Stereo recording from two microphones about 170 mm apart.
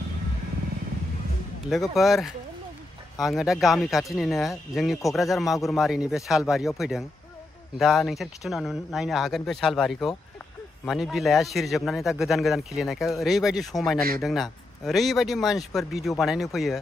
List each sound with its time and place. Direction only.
1.7 s speech: centre (ahead or behind)
13.9 s speech: 60° right (ahead or behind)
14.2 s speech: centre (ahead or behind)